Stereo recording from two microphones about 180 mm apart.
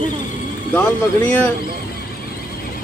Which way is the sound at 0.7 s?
5° left (ahead or behind).